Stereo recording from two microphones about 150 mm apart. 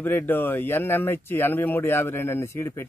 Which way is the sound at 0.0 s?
15° left (ahead or behind).